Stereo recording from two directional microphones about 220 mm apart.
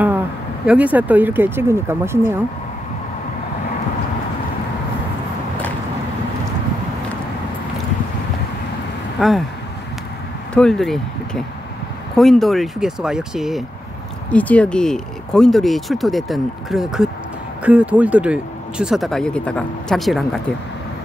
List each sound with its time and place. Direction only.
0.7 s speech: 5° right (ahead or behind)
9.2 s speech: 5° right (ahead or behind)
10.5 s speech: 5° left (ahead or behind)